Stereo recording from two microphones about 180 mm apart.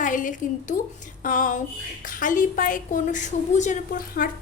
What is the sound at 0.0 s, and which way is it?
A woman's voice, 45° left (ahead or behind).